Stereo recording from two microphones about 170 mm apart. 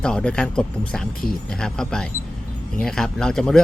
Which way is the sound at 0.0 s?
5° left (ahead or behind).